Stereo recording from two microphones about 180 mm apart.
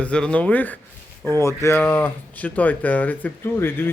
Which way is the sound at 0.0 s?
5° left (ahead or behind).